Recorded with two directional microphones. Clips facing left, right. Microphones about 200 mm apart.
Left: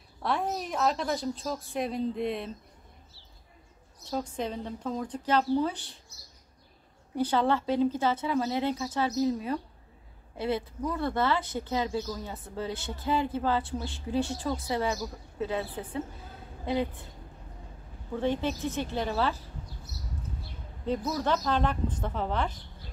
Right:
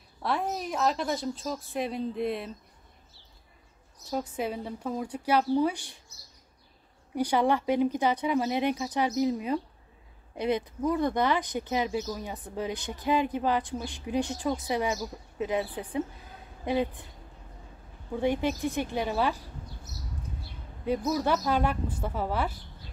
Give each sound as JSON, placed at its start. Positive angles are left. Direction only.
{"t": 0.2, "sound": "a woman's voice", "side_deg": 0}
{"t": 4.1, "sound": "speech", "side_deg": -5}
{"t": 7.2, "sound": "speech", "side_deg": -15}
{"t": 18.1, "sound": "speech", "side_deg": -15}
{"t": 20.8, "sound": "speech", "side_deg": -10}